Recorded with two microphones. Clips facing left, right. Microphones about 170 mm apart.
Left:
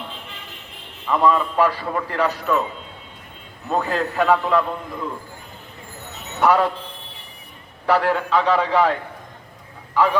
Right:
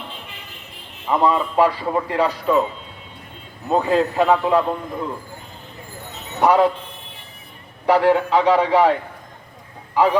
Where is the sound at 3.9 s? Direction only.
15° right (ahead or behind).